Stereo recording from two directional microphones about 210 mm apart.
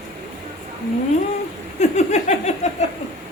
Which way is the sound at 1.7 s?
35° left (ahead or behind).